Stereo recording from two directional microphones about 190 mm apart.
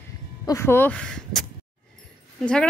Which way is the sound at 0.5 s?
15° left (ahead or behind).